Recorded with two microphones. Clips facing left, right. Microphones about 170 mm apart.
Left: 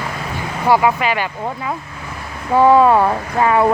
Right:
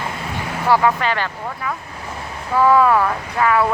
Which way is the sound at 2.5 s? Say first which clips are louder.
Left 3 dB; 25° left (ahead or behind).